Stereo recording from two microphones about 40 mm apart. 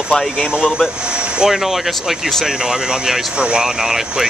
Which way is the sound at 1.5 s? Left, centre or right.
Centre.